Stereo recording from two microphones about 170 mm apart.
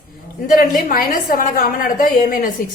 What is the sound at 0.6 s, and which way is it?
A woman's voice, 55° left (ahead or behind).